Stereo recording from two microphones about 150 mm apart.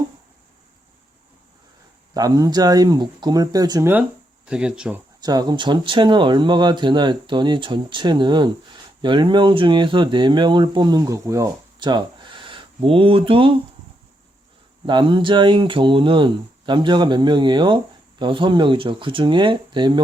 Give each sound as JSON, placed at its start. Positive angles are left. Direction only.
{"t": 2.1, "sound": "speech", "side_deg": -25}
{"t": 4.4, "sound": "speech", "side_deg": -5}
{"t": 5.2, "sound": "speech", "side_deg": -25}
{"t": 14.8, "sound": "speech", "side_deg": -30}